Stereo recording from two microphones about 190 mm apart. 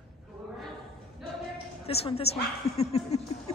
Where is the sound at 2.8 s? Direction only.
35° left (ahead or behind).